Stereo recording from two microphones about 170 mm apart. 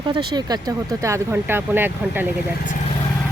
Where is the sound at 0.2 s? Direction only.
25° right (ahead or behind).